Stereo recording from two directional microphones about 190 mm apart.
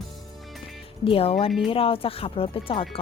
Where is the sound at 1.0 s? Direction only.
30° left (ahead or behind).